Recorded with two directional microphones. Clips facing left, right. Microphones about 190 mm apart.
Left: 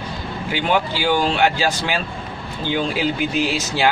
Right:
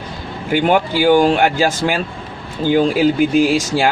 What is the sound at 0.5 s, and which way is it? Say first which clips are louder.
Speech: right 6 dB; 50° right (ahead or behind).